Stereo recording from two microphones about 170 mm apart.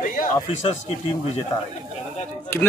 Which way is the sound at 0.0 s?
55° left (ahead or behind).